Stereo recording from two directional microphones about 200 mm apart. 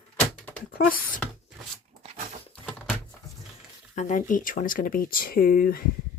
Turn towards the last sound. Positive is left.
turn(degrees=45)  # may be behind; listen again after turning